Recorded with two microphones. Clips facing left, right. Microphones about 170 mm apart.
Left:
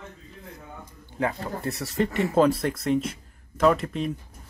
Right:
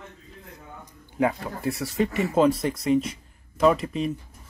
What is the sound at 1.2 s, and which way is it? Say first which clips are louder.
Speech: right 3 dB; 10° right (ahead or behind).